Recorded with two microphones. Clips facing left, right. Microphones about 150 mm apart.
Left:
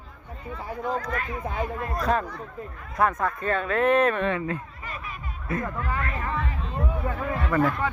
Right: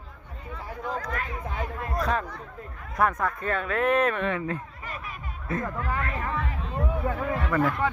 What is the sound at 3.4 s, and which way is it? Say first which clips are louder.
Speech: left 3 dB; 35° left (ahead or behind).